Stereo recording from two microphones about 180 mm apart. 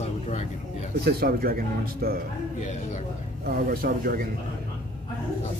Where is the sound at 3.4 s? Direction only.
55° right (ahead or behind).